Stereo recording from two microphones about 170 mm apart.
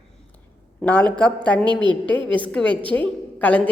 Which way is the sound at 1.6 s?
25° right (ahead or behind).